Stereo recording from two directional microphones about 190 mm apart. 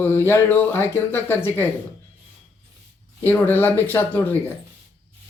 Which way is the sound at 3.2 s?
10° left (ahead or behind).